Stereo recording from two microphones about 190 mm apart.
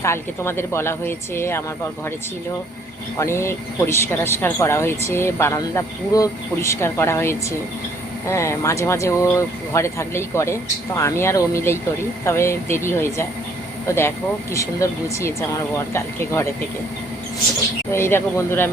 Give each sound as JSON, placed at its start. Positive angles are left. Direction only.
{"t": 0.0, "sound": "speech", "side_deg": 15}
{"t": 3.2, "sound": "speech", "side_deg": 15}
{"t": 17.9, "sound": "speech", "side_deg": 15}